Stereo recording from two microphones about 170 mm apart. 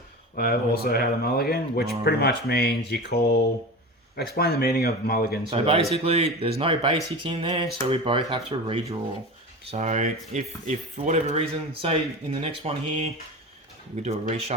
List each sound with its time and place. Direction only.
0.3 s speech: 65° left (ahead or behind)
5.5 s speech: 35° right (ahead or behind)
9.6 s speech: 45° right (ahead or behind)